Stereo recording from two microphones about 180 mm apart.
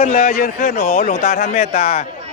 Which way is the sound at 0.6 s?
60° left (ahead or behind).